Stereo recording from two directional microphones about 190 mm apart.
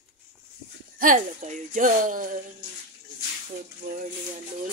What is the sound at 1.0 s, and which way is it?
Speech, 45° right (ahead or behind).